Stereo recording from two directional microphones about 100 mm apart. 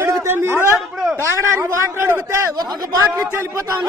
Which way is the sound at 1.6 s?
25° right (ahead or behind).